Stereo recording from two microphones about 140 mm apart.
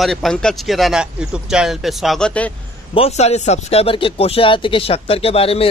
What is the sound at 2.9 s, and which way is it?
Speech, 45° left (ahead or behind).